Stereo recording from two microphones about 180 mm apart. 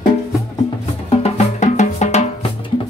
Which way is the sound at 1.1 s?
40° left (ahead or behind).